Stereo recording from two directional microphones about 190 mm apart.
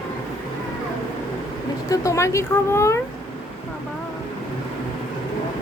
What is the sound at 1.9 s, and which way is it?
Speech, 15° left (ahead or behind).